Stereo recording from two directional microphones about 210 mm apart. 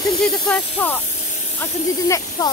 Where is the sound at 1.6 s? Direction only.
15° left (ahead or behind).